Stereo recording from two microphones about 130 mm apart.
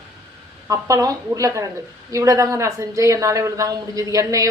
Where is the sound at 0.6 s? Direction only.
25° right (ahead or behind).